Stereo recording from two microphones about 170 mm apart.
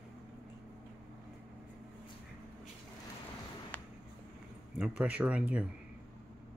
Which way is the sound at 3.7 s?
10° left (ahead or behind).